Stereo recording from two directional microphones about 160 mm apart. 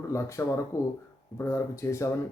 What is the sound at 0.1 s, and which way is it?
Speech, 20° left (ahead or behind).